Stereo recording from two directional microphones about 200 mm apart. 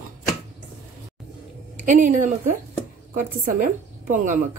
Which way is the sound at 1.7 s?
40° right (ahead or behind).